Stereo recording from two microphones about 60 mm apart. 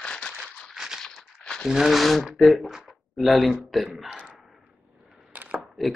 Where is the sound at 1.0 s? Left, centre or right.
Centre.